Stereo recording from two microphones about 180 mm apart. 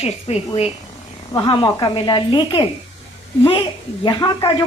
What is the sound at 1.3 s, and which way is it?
Speech, 25° left (ahead or behind).